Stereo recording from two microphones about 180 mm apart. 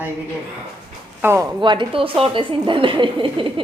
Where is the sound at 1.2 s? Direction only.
15° right (ahead or behind).